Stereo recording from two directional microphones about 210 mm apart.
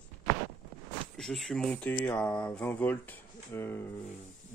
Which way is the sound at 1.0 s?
Centre (ahead or behind).